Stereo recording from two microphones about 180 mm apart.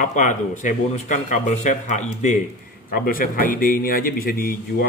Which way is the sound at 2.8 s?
55° left (ahead or behind).